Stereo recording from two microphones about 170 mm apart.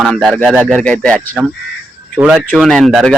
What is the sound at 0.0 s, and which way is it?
Speech, centre (ahead or behind).